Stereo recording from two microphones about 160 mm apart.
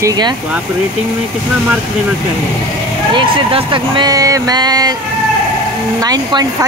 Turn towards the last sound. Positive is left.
turn(degrees=-25)  # may be behind; listen again after turning